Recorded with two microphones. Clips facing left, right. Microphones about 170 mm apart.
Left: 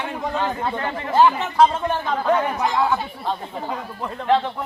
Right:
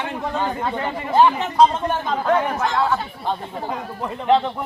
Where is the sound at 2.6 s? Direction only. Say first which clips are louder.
Even; 15° left (ahead or behind).